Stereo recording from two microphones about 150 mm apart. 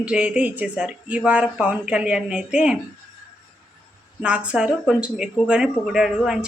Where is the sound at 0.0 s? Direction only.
5° right (ahead or behind).